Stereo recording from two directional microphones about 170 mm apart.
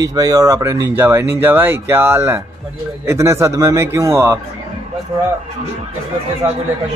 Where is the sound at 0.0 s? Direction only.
20° right (ahead or behind).